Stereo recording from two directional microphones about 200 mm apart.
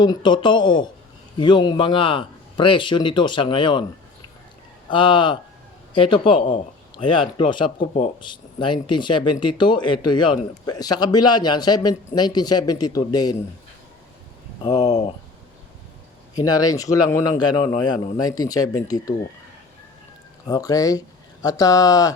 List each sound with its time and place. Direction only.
0.0 s speech: 20° left (ahead or behind)
4.9 s speech: 25° left (ahead or behind)
6.9 s a sound: 25° left (ahead or behind)
7.3 s speech: 25° left (ahead or behind)
14.6 s speech: 20° left (ahead or behind)
14.8 s speech: 35° left (ahead or behind)
16.3 s speech: 20° left (ahead or behind)
20.5 s speech: 20° left (ahead or behind)